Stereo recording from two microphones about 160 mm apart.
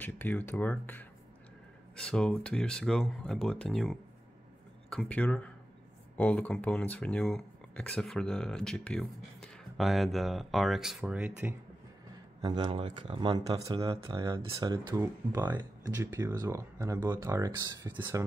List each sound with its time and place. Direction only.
0.0 s speech: 10° left (ahead or behind); by 11.5 s 10° right (ahead or behind)
12.4 s speech: 30° right (ahead or behind)